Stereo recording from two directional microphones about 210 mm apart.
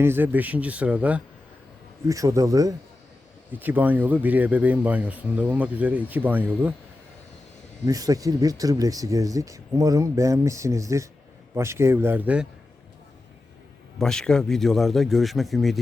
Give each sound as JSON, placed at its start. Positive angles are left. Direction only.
{"t": 0.0, "sound": "speech", "side_deg": -10}
{"t": 7.9, "sound": "speech", "side_deg": -15}
{"t": 14.0, "sound": "a man's voice", "side_deg": 5}